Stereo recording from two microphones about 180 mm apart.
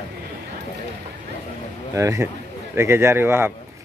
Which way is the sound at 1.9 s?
15° right (ahead or behind).